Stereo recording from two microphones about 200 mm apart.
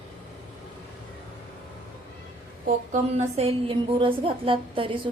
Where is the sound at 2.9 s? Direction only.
30° right (ahead or behind).